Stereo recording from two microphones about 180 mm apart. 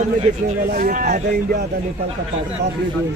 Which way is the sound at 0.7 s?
50° right (ahead or behind).